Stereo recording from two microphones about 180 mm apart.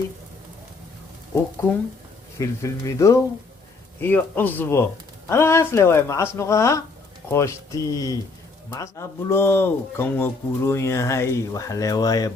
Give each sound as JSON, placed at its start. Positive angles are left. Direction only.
{"t": 2.4, "sound": "speech", "side_deg": 15}